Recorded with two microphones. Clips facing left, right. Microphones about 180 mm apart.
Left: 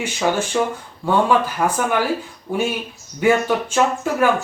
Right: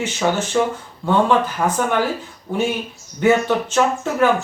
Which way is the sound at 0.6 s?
5° left (ahead or behind).